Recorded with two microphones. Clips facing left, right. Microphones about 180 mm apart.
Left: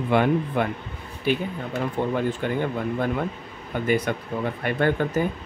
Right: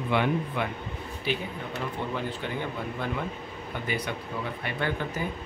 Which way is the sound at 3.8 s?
50° left (ahead or behind).